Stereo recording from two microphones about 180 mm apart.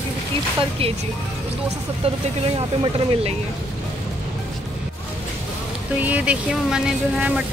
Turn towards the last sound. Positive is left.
turn(degrees=-5)  # may be behind; listen again after turning